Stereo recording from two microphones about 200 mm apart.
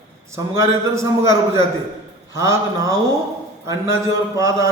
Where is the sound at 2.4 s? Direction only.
15° right (ahead or behind).